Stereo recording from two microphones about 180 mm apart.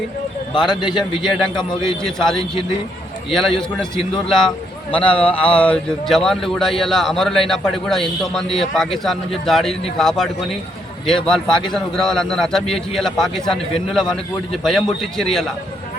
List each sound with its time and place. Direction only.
0.5 s a man's voice: 25° left (ahead or behind)
1.9 s a man's voice: 5° left (ahead or behind)